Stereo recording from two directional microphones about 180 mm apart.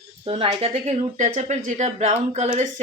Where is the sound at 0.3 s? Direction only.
30° right (ahead or behind).